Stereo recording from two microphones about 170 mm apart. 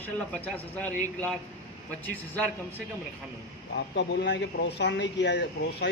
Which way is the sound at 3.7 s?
90° left.